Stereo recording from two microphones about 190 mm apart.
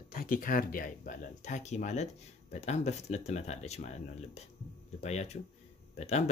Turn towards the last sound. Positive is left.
turn(degrees=35)  # may be behind; listen again after turning